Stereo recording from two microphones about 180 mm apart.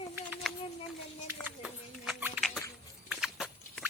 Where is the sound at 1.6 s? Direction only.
5° right (ahead or behind).